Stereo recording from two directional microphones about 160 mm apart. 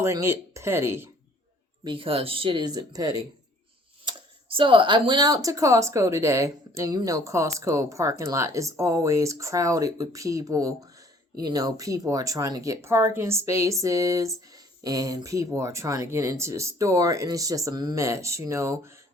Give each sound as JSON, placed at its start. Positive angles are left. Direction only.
{"t": 0.0, "sound": "speech", "side_deg": -20}
{"t": 1.8, "sound": "speech", "side_deg": -30}